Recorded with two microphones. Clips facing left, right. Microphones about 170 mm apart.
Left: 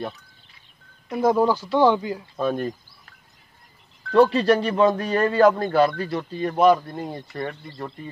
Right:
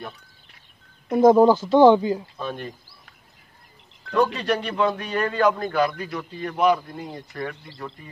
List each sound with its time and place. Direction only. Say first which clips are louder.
1.1 s speech: right 5 dB; 25° right (ahead or behind)
2.3 s speech: left 7 dB; 45° left (ahead or behind)
4.1 s speech: left 5 dB; 35° left (ahead or behind)